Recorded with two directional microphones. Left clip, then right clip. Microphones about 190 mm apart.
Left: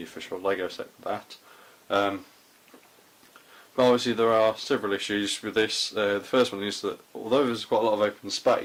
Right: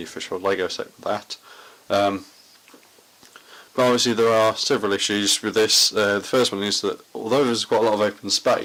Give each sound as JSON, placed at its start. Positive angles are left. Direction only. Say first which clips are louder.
{"t": 0.0, "sound": "speech", "louder": "right 5 dB", "side_deg": -35}
{"t": 3.8, "sound": "speech", "louder": "right 3 dB", "side_deg": -35}